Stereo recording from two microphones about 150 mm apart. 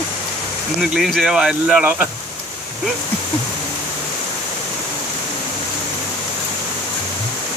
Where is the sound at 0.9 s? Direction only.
Centre (ahead or behind).